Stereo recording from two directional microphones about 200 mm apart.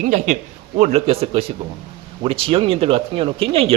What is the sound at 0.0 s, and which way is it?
Speech, 40° right (ahead or behind).